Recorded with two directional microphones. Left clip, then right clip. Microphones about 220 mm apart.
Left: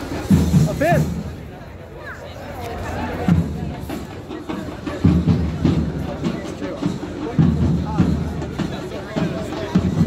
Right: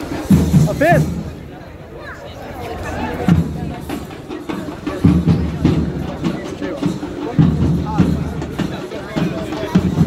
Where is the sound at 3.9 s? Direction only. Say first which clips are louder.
Right 3 dB; 35° right (ahead or behind).